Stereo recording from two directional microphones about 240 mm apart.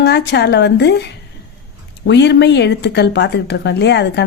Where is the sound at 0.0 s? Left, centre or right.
Left.